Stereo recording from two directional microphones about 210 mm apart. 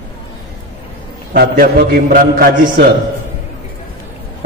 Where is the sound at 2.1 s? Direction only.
45° right (ahead or behind).